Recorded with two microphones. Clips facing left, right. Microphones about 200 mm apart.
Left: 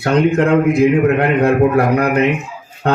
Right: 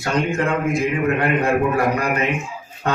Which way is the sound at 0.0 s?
65° left (ahead or behind).